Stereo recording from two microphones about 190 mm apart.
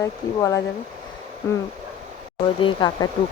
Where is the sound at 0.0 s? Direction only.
15° left (ahead or behind).